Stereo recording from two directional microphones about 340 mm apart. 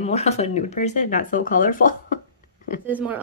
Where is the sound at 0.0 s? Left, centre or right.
Centre.